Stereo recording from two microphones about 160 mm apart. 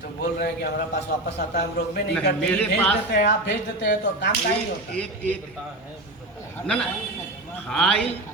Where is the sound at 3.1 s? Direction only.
90° left.